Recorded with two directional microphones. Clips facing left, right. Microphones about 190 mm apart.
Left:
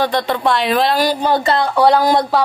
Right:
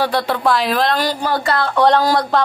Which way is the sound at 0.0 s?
5° right (ahead or behind).